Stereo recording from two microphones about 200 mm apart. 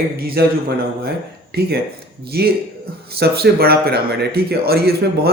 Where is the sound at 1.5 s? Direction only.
50° right (ahead or behind).